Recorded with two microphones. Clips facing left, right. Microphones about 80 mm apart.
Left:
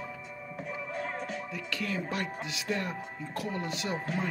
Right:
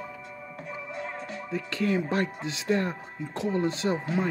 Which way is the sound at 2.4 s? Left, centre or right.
Right.